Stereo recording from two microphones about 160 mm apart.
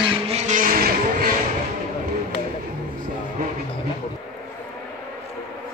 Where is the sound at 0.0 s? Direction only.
45° right (ahead or behind).